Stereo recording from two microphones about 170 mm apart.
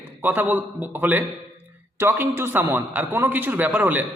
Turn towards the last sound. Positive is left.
turn(degrees=-10)  # may be behind; listen again after turning